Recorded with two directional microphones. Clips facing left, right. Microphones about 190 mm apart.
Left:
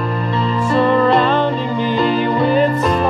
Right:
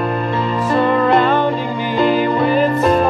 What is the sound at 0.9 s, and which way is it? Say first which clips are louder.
Music: even; 10° right (ahead or behind).